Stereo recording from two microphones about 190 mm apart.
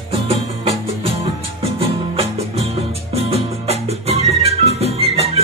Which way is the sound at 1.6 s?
30° right (ahead or behind).